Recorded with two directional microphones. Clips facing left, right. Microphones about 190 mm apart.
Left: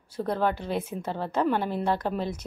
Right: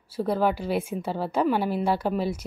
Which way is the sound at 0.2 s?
10° right (ahead or behind).